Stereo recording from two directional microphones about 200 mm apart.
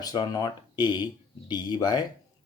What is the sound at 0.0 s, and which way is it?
Speech, 20° left (ahead or behind).